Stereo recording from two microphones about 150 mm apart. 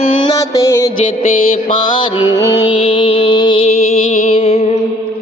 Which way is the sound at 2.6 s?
35° left (ahead or behind).